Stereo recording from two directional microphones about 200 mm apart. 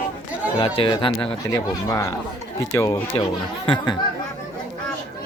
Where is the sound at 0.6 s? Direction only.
25° left (ahead or behind).